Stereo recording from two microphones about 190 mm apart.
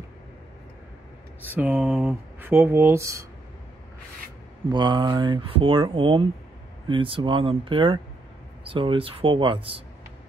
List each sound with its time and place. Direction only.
1.4 s speech: 10° right (ahead or behind)
4.6 s speech: 25° right (ahead or behind)